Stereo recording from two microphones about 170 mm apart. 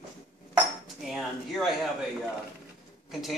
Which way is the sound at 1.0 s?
Centre (ahead or behind).